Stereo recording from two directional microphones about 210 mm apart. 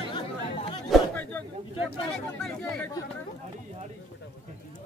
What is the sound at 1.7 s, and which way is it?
Speech, 25° left (ahead or behind).